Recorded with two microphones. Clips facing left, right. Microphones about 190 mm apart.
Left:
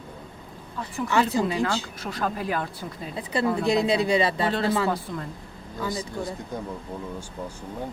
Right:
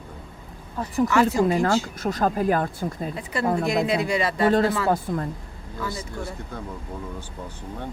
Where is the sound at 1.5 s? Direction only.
50° right (ahead or behind).